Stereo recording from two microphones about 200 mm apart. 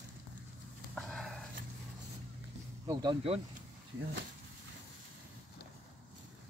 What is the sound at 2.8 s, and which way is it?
Speech, 25° right (ahead or behind).